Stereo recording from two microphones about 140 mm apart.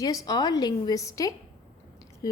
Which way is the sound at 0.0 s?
25° left (ahead or behind).